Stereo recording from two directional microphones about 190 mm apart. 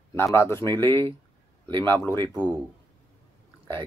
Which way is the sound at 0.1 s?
15° left (ahead or behind).